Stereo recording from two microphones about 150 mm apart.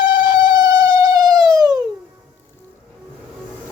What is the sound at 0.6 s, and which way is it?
Siren, 25° right (ahead or behind).